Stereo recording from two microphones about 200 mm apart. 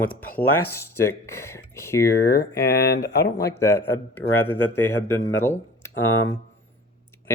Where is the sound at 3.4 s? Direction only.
15° left (ahead or behind).